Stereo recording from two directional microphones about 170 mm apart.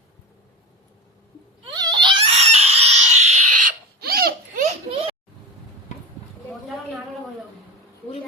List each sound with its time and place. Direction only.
1.7 s a sound: 25° right (ahead or behind)
2.3 s chicken: 40° right (ahead or behind)
4.0 s baby laughter: 60° right (ahead or behind)